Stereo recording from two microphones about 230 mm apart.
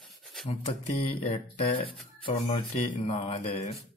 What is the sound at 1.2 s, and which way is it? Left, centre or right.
Speech, left.